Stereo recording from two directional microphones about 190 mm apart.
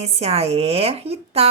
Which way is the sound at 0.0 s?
35° right (ahead or behind).